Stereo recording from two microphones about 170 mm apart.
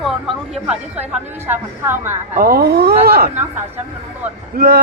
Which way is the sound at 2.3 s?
60° right (ahead or behind).